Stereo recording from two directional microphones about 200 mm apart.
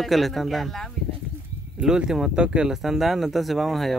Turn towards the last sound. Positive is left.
turn(degrees=0)  # may be behind; listen again after turning